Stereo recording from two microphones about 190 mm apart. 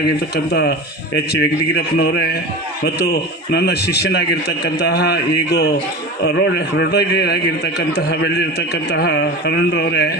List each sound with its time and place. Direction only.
0.5 s a man's voice: 60° left (ahead or behind)